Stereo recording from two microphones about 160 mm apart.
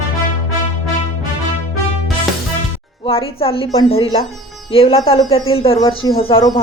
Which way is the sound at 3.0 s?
35° left (ahead or behind).